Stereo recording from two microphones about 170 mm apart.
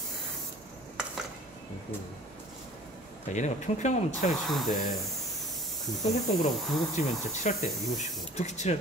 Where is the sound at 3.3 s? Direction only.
45° left (ahead or behind).